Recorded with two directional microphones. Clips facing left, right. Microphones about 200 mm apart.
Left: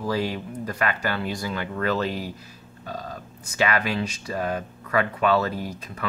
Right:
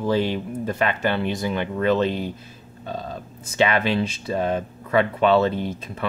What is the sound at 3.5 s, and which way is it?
Speech, 25° right (ahead or behind).